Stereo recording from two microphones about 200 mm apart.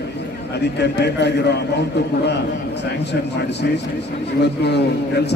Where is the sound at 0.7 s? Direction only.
55° left (ahead or behind).